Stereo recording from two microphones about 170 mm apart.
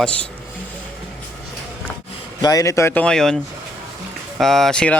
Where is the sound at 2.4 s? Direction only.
20° left (ahead or behind); by 3.3 s 5° left (ahead or behind).